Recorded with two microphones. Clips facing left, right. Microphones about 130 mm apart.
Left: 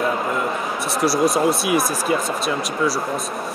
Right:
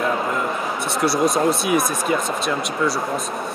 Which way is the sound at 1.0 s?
Centre (ahead or behind).